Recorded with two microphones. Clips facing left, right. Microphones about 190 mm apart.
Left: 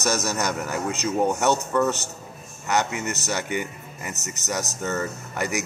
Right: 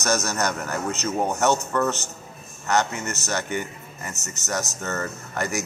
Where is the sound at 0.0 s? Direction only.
10° left (ahead or behind).